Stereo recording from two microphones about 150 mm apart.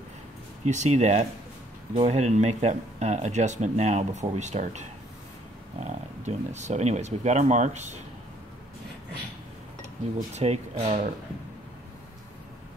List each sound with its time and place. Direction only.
0.7 s speech: 50° right (ahead or behind)
10.3 s speech: 45° right (ahead or behind)